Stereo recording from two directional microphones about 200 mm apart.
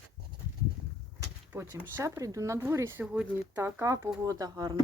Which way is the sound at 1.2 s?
15° right (ahead or behind).